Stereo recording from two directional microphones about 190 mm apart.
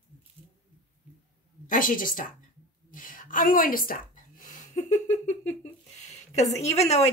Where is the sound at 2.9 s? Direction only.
45° left (ahead or behind).